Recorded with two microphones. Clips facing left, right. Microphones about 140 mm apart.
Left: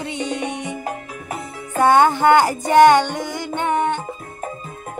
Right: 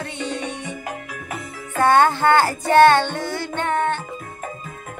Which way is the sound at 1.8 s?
15° left (ahead or behind).